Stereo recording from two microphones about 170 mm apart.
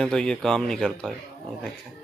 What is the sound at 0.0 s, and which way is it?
Speech, 5° left (ahead or behind).